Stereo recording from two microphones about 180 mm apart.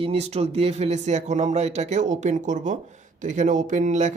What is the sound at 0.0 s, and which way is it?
Speech, 35° right (ahead or behind).